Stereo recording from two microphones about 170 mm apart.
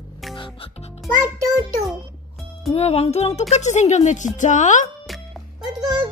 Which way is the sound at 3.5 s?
45° left (ahead or behind).